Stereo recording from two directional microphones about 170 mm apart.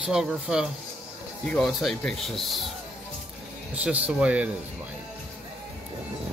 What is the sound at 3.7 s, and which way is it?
Speech, 10° right (ahead or behind).